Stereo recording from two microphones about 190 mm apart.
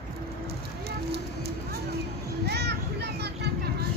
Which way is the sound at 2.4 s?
60° right (ahead or behind).